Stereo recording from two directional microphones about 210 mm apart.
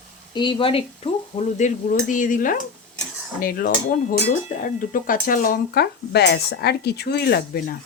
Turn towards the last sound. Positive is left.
turn(degrees=45)  # may be behind; listen again after turning